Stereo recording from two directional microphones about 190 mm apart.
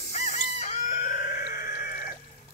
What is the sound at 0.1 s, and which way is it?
Chicken, 40° left (ahead or behind).